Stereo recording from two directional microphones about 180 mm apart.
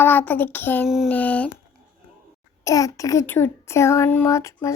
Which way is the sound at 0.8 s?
Centre (ahead or behind).